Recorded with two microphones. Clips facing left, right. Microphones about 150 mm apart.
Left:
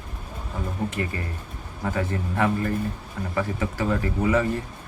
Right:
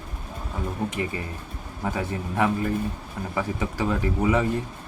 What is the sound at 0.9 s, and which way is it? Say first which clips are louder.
Speech: even; 15° right (ahead or behind).